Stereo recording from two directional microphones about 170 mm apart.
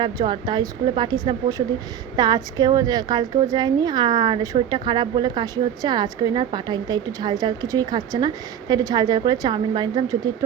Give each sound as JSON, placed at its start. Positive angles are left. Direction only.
{"t": 0.0, "sound": "a woman's voice", "side_deg": -25}